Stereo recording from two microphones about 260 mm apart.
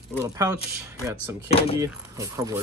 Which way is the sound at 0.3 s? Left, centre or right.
Centre.